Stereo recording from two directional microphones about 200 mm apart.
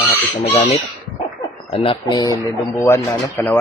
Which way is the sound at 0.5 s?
30° left (ahead or behind).